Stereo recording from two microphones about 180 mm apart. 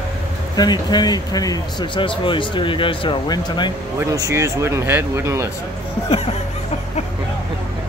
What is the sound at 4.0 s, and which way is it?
Speech, 20° right (ahead or behind).